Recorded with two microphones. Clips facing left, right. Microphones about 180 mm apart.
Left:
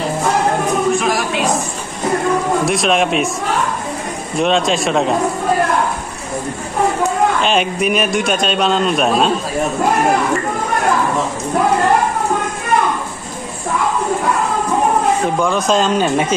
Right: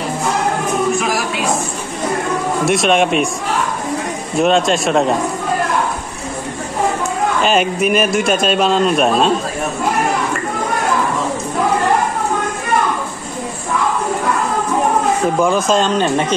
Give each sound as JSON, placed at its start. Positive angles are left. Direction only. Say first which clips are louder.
{"t": 0.9, "sound": "a sound", "louder": "left 1 dB", "side_deg": -5}
{"t": 2.6, "sound": "a man's voice", "louder": "right 1 dB", "side_deg": 0}
{"t": 4.4, "sound": "a man's voice", "louder": "right 2 dB", "side_deg": 0}
{"t": 7.4, "sound": "a man's voice", "louder": "right 1 dB", "side_deg": 0}
{"t": 15.5, "sound": "a man's voice", "louder": "even", "side_deg": 0}